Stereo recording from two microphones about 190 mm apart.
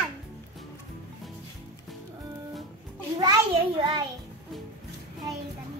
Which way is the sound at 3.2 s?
25° right (ahead or behind).